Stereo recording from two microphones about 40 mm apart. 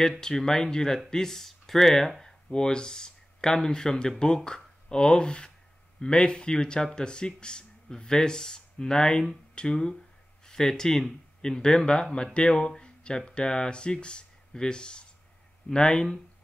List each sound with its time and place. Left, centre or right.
0.2 s speech: centre
2.5 s speech: centre